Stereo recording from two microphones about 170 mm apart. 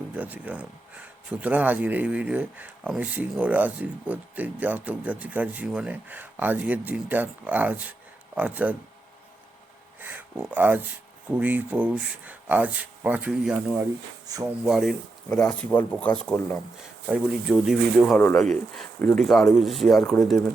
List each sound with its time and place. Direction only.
0.1 s speech: 10° right (ahead or behind)
10.0 s speech: 10° right (ahead or behind)
14.3 s speech: 20° right (ahead or behind)
14.7 s speech: centre (ahead or behind)